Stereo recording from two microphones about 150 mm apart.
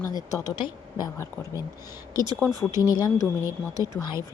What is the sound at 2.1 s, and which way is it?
Speech, 25° right (ahead or behind).